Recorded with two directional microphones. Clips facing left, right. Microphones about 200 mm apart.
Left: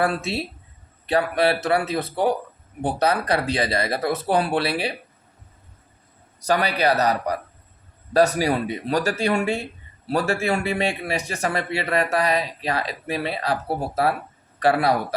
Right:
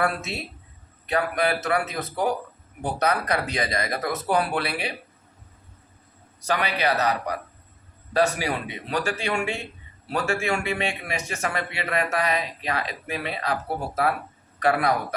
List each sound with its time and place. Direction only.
0.0 s a man's voice: 30° left (ahead or behind)
6.4 s a man's voice: 35° left (ahead or behind)